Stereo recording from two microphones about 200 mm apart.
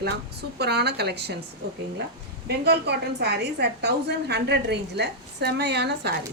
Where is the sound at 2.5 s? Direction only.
55° right (ahead or behind).